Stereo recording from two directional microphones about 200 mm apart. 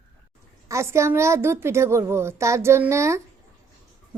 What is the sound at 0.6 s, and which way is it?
A child's voice, 15° right (ahead or behind).